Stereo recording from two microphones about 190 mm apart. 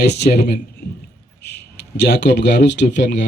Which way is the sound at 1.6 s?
60° left (ahead or behind).